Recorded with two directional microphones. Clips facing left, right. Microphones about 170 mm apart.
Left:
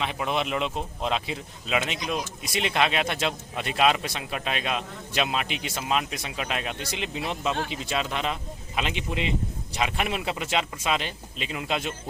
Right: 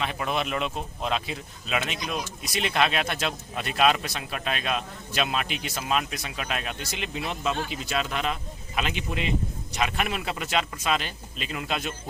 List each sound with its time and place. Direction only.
0.0 s a man's voice: 20° left (ahead or behind)